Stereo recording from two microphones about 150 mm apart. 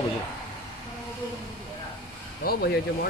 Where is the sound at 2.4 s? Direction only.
90° left.